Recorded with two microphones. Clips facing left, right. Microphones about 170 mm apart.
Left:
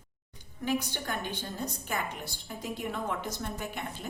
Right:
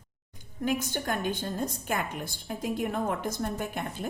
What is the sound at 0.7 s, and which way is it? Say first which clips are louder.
A woman's voice: right 2 dB; 45° right (ahead or behind).